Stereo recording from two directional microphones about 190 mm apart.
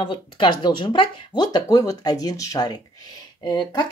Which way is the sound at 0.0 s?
25° left (ahead or behind).